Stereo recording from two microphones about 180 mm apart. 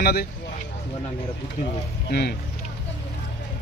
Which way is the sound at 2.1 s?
60° left (ahead or behind).